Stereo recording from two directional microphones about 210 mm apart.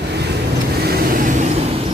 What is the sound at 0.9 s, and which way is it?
Vehicle, 45° right (ahead or behind).